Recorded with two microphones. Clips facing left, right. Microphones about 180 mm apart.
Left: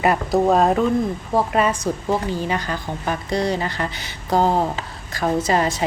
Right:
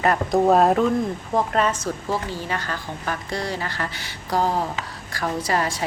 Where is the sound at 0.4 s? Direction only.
Centre (ahead or behind).